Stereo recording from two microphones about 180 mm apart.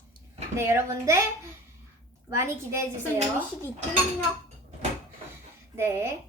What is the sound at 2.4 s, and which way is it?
Speech, 15° right (ahead or behind).